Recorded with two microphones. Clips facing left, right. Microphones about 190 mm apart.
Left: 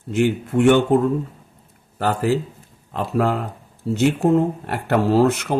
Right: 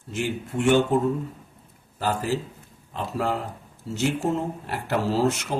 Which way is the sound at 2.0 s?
65° left (ahead or behind).